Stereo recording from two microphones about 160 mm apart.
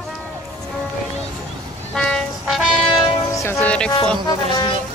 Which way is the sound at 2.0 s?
5° left (ahead or behind).